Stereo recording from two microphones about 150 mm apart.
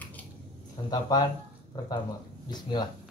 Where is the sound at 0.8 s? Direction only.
30° left (ahead or behind).